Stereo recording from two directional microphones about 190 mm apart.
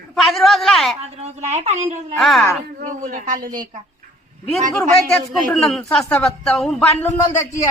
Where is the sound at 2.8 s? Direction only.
40° right (ahead or behind).